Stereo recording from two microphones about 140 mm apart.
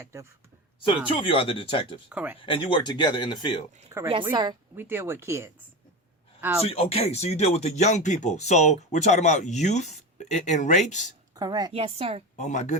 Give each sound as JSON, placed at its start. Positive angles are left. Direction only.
{"t": 0.0, "sound": "a woman's voice", "side_deg": -20}
{"t": 1.0, "sound": "speech", "side_deg": 40}
{"t": 2.0, "sound": "speech", "side_deg": -10}
{"t": 2.4, "sound": "speech", "side_deg": 40}
{"t": 3.8, "sound": "a woman's voice", "side_deg": -20}
{"t": 4.1, "sound": "speech", "side_deg": -35}
{"t": 4.8, "sound": "speech", "side_deg": -15}
{"t": 6.7, "sound": "speech", "side_deg": 45}
{"t": 11.3, "sound": "a woman's voice", "side_deg": -30}
{"t": 11.7, "sound": "a woman's voice", "side_deg": -45}
{"t": 12.4, "sound": "speech", "side_deg": 60}